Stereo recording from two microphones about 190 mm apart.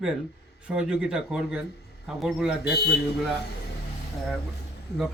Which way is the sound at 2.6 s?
55° left (ahead or behind).